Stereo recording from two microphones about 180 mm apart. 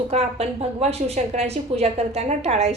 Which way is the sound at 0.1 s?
35° right (ahead or behind).